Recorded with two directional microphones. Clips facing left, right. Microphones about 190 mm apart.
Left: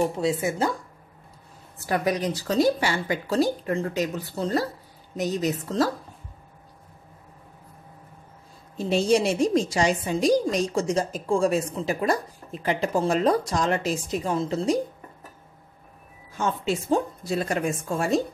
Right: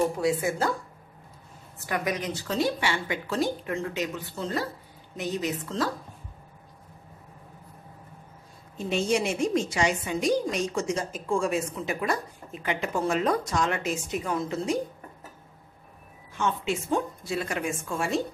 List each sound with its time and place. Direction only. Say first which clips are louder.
0.2 s speech: left 1 dB; 25° left (ahead or behind)
1.9 s a woman's voice: left 5 dB; 35° left (ahead or behind)
8.7 s a woman's voice: left 5 dB; 35° left (ahead or behind)
16.3 s a woman's voice: left 2 dB; 35° left (ahead or behind)